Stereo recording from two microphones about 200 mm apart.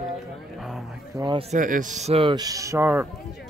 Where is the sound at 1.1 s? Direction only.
20° right (ahead or behind).